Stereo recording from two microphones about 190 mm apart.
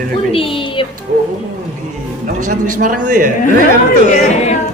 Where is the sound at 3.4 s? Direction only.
40° left (ahead or behind).